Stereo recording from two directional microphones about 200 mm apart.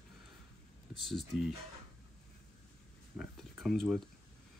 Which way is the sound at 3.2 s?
Centre (ahead or behind).